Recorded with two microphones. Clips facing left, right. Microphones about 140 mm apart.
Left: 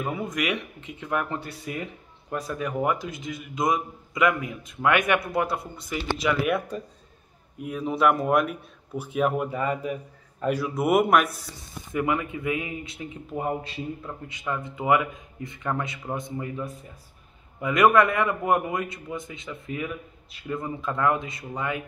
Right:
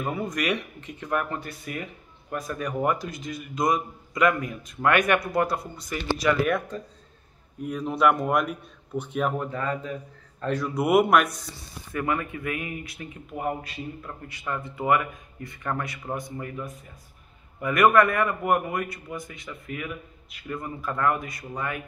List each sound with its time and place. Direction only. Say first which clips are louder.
0.0 s speech: right 1 dB; centre (ahead or behind)
0.3 s a man's voice: right 1 dB; 15° left (ahead or behind)
4.1 s a man's voice: right 1 dB; 10° left (ahead or behind)
5.9 s a man's voice: right 2 dB; 10° left (ahead or behind)
11.9 s a man's voice: left 2 dB; 15° left (ahead or behind)